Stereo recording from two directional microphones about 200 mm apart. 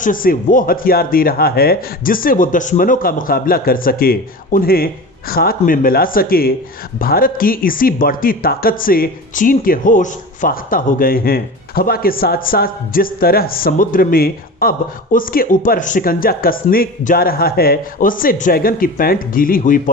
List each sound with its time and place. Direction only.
0.0 s speech: 45° left (ahead or behind)